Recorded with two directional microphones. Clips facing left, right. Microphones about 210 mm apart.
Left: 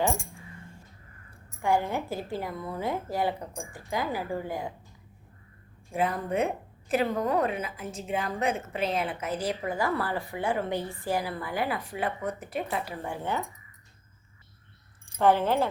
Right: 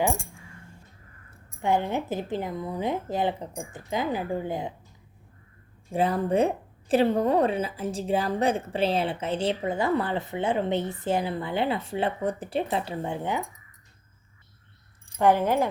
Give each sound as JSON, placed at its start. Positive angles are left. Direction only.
{"t": 1.6, "sound": "a woman's voice", "side_deg": -20}
{"t": 5.9, "sound": "a woman's voice", "side_deg": -30}
{"t": 15.2, "sound": "speech", "side_deg": -15}